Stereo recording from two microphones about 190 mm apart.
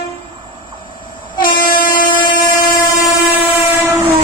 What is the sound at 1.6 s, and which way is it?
Train, 45° left (ahead or behind).